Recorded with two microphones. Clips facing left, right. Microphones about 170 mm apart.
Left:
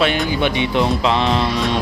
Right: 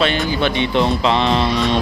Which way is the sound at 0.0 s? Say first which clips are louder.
Even; 10° left (ahead or behind).